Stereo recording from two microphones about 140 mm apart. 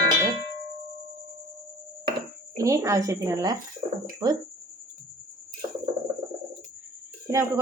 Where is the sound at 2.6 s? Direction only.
25° right (ahead or behind).